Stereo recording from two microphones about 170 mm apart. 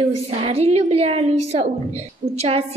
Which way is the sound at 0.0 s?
35° right (ahead or behind).